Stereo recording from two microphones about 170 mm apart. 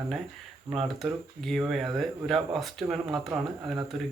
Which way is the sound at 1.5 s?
Centre (ahead or behind).